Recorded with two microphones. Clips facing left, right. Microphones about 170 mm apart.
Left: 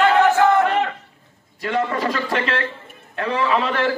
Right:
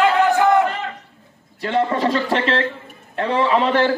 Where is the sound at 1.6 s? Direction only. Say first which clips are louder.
Right 3 dB; 30° right (ahead or behind).